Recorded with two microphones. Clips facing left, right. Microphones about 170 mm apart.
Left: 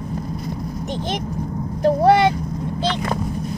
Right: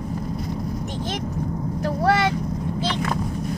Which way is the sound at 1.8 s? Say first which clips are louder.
Left 7 dB; 20° left (ahead or behind).